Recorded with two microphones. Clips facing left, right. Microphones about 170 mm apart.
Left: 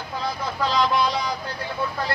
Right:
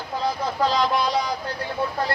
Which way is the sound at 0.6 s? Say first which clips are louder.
Left 1 dB; 40° right (ahead or behind).